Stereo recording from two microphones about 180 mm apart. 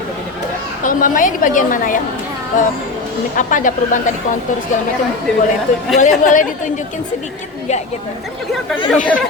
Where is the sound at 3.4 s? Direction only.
45° left (ahead or behind).